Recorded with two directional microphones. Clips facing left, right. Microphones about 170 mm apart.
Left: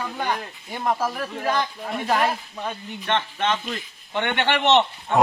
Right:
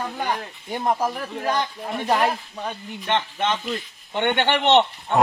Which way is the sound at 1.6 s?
5° left (ahead or behind).